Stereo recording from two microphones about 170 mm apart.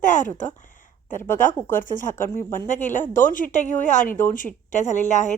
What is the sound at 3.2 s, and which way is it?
Speech, 50° left (ahead or behind).